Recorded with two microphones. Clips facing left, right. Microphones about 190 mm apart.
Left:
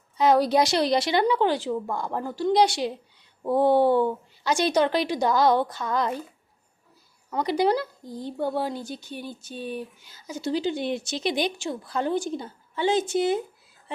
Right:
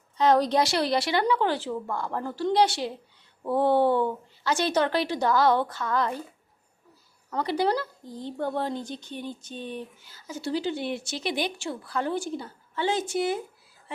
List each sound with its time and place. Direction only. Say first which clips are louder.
0.2 s speech: left 2 dB; 10° left (ahead or behind)
7.3 s speech: left 3 dB; 15° left (ahead or behind)